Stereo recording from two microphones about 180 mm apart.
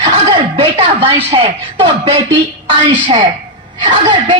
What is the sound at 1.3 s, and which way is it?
A woman's voice, 30° right (ahead or behind).